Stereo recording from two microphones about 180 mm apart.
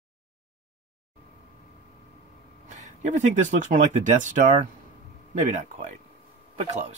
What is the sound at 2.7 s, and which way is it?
Speech, 40° right (ahead or behind).